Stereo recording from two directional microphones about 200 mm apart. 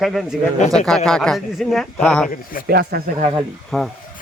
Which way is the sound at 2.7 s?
55° right (ahead or behind).